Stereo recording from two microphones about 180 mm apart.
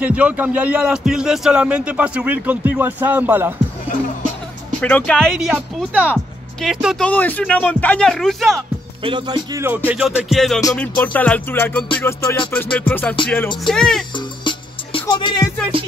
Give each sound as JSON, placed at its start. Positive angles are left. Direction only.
{"t": 0.0, "sound": "speech", "side_deg": -10}
{"t": 4.7, "sound": "speech", "side_deg": 5}
{"t": 7.1, "sound": "music", "side_deg": 10}
{"t": 9.0, "sound": "speech", "side_deg": -25}
{"t": 9.8, "sound": "speech", "side_deg": -5}
{"t": 10.7, "sound": "music", "side_deg": 5}
{"t": 13.7, "sound": "speech", "side_deg": 5}
{"t": 14.4, "sound": "music", "side_deg": 30}